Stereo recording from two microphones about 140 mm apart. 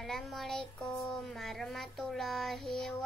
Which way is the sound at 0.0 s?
Centre (ahead or behind).